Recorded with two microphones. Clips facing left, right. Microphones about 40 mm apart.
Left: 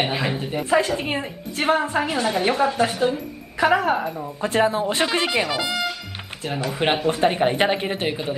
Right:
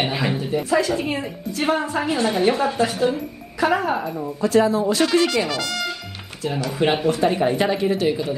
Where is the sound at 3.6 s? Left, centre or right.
Left.